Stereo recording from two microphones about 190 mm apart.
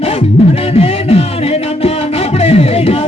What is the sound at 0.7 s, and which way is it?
Music, 30° left (ahead or behind).